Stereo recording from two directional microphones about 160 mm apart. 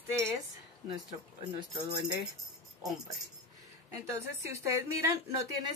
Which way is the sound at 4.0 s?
20° right (ahead or behind).